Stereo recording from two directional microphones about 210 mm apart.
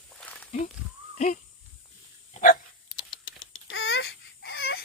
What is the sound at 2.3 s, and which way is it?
Dog, 40° left (ahead or behind).